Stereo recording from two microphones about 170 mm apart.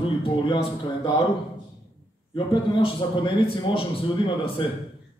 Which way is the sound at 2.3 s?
30° left (ahead or behind).